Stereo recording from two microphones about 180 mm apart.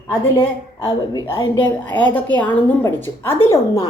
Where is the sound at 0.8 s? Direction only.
20° left (ahead or behind).